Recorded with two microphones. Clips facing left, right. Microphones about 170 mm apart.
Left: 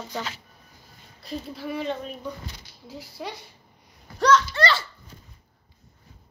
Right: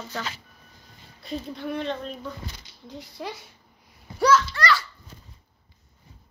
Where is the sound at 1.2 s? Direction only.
Centre (ahead or behind).